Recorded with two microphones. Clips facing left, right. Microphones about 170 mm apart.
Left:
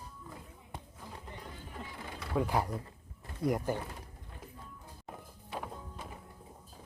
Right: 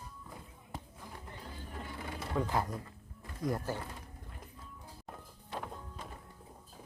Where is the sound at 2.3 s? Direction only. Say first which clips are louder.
Left 2 dB; 10° left (ahead or behind).